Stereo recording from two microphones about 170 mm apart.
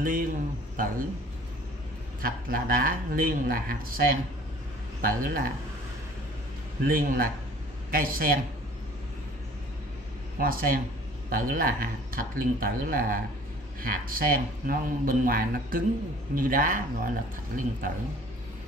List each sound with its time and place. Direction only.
0.0 s speech: 55° right (ahead or behind)
2.2 s speech: 60° right (ahead or behind)
6.8 s speech: 55° right (ahead or behind)
10.4 s speech: 60° right (ahead or behind)